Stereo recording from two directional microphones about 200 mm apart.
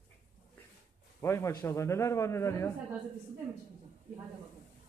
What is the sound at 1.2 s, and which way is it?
A man's voice, 15° left (ahead or behind).